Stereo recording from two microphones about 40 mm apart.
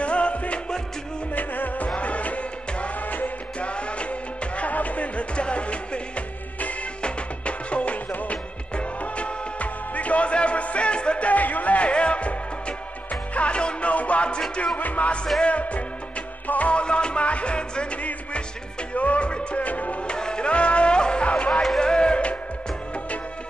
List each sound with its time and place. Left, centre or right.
0.0 s music: left
1.3 s music: left
2.0 s music: left
3.6 s music: left
11.2 s music: left
16.8 s music: left
18.9 s music: left
20.1 s music: left